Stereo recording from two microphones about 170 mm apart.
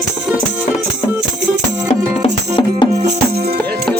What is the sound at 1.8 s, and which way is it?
Music, 35° left (ahead or behind).